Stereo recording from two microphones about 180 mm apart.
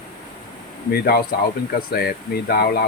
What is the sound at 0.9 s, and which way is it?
Speech, 60° left (ahead or behind).